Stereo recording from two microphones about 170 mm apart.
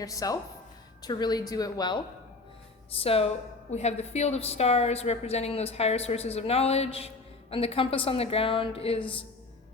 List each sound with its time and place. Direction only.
0.0 s speech: 20° left (ahead or behind)
2.9 s a woman's voice: 35° left (ahead or behind)